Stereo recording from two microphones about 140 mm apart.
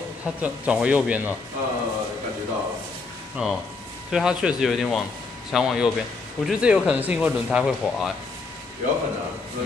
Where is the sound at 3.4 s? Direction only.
5° right (ahead or behind).